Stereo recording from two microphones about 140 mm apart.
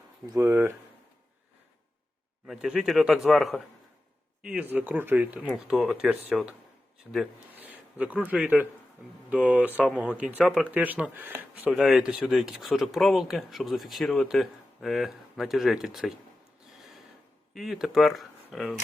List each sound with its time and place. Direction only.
0.3 s speech: 20° right (ahead or behind)
2.5 s speech: 5° right (ahead or behind)
7.1 s speech: 5° left (ahead or behind)
7.5 s speech: 10° right (ahead or behind)
11.7 s speech: centre (ahead or behind)
16.7 s a sound: centre (ahead or behind)
17.5 s speech: centre (ahead or behind)